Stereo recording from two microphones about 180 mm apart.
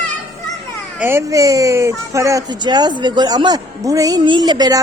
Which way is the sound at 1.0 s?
15° right (ahead or behind).